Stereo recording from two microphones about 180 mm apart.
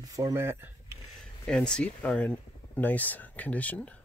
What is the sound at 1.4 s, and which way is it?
Speech, 5° left (ahead or behind).